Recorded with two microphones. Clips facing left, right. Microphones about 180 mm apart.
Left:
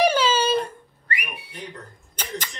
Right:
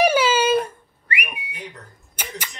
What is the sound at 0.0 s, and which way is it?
Whistling, 10° right (ahead or behind).